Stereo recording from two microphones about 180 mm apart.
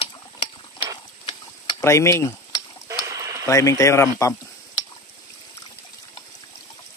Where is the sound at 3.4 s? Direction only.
15° left (ahead or behind).